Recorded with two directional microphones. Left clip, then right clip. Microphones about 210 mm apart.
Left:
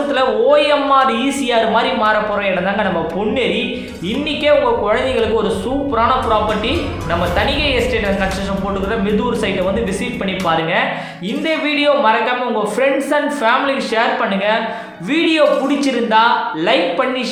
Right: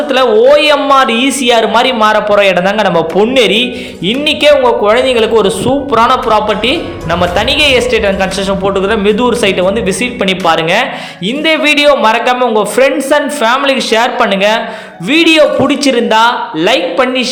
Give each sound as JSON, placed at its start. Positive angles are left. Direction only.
{"t": 0.1, "sound": "a woman's voice", "side_deg": -40}
{"t": 4.4, "sound": "a man's voice", "side_deg": -40}